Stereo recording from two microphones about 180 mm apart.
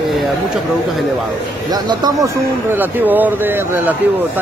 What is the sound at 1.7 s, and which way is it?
Speech, 20° right (ahead or behind).